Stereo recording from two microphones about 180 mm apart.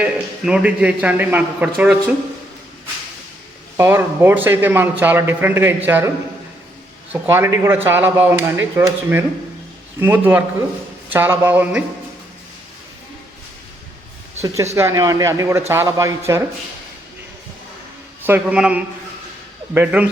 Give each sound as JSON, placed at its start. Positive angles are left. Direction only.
{"t": 0.0, "sound": "a man's voice", "side_deg": -5}
{"t": 3.8, "sound": "speech", "side_deg": -15}
{"t": 7.1, "sound": "speech", "side_deg": -15}
{"t": 14.4, "sound": "speech", "side_deg": -15}
{"t": 18.3, "sound": "speech", "side_deg": -10}